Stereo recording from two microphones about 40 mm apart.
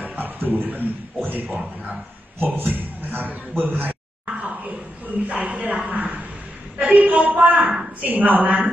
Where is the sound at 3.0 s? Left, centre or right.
Right.